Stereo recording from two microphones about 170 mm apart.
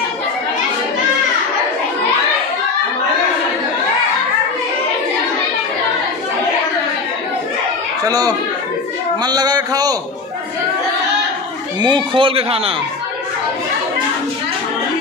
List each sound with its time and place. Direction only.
8.1 s speech: 20° right (ahead or behind)
11.8 s speech: 25° right (ahead or behind)